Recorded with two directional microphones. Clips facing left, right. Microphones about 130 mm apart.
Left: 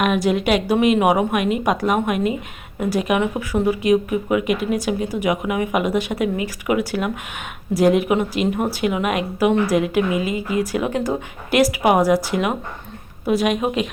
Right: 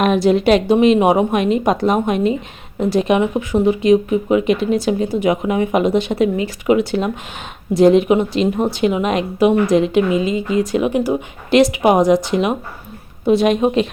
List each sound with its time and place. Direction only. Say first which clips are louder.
0.0 s speech: right 5 dB; 30° right (ahead or behind)